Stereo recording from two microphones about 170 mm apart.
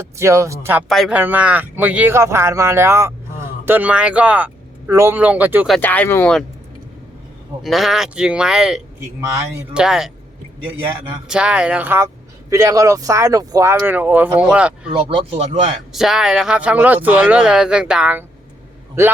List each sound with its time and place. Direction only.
0.2 s speech: 15° right (ahead or behind)
0.9 s speech: centre (ahead or behind)
5.7 s speech: 10° left (ahead or behind)
7.6 s speech: centre (ahead or behind)
11.3 s speech: 5° right (ahead or behind)
15.2 s speech: 35° right (ahead or behind)
15.9 s speech: 5° right (ahead or behind)